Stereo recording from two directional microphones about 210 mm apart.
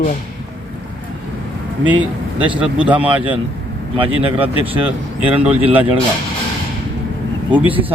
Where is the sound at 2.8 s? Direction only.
5° right (ahead or behind).